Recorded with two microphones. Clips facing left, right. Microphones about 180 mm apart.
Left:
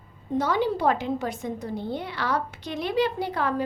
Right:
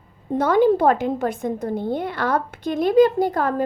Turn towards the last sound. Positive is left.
turn(degrees=-45)  # may be behind; listen again after turning